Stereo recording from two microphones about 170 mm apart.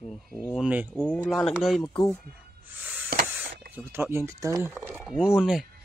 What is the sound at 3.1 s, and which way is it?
Printer, 60° right (ahead or behind).